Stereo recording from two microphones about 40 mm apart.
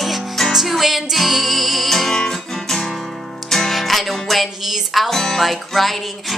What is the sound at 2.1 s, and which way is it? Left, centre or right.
Music, centre.